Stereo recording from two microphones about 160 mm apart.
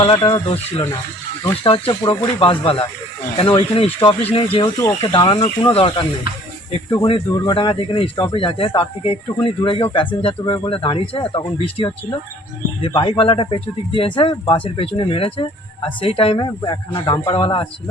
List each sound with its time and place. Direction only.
0.0 s speech: 25° left (ahead or behind)
0.4 s speech: 40° left (ahead or behind)
4.0 s speech: 35° left (ahead or behind)